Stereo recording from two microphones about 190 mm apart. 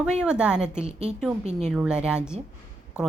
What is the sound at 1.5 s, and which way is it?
Speech, 35° right (ahead or behind).